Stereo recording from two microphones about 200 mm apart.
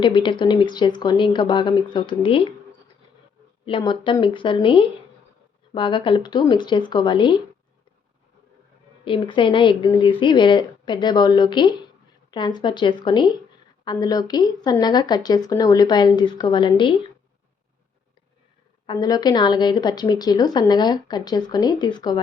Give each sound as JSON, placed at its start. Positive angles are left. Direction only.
{"t": 0.0, "sound": "a woman's voice", "side_deg": 25}
{"t": 3.7, "sound": "a woman's voice", "side_deg": 25}
{"t": 9.0, "sound": "a woman's voice", "side_deg": 25}
{"t": 18.9, "sound": "a woman's voice", "side_deg": 20}